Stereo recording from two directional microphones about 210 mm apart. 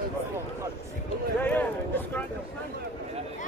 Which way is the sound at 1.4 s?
10° left (ahead or behind).